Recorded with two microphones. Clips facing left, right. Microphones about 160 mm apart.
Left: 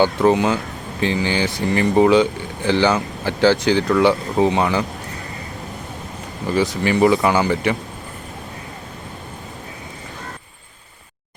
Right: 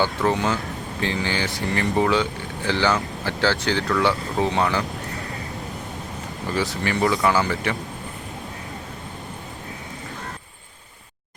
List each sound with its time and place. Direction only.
0.0 s speech: 20° left (ahead or behind)
6.6 s speech: 20° left (ahead or behind)